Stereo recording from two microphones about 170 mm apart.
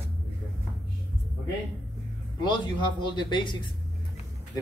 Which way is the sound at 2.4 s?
25° left (ahead or behind).